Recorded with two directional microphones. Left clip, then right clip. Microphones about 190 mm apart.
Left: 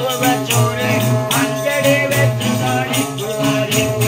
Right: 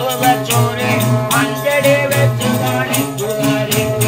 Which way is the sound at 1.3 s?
70° right (ahead or behind).